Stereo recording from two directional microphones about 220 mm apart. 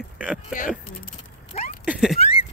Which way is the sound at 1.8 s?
5° right (ahead or behind).